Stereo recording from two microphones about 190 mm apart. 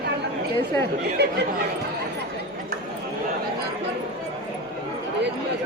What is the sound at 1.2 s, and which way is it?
Speech, 60° right (ahead or behind).